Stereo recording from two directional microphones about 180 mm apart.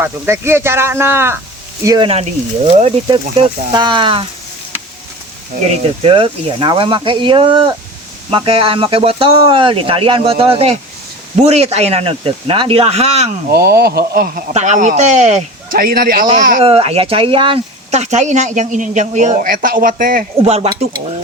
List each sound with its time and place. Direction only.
0.0 s speech: 15° right (ahead or behind)
2.0 s speech: 35° right (ahead or behind)
3.1 s speech: 25° right (ahead or behind)
5.6 s speech: 30° right (ahead or behind)
13.5 s speech: 60° right (ahead or behind)
14.5 s speech: 40° right (ahead or behind)
16.6 s speech: 30° right (ahead or behind); by 20.2 s 50° right (ahead or behind)
20.4 s speech: 35° right (ahead or behind)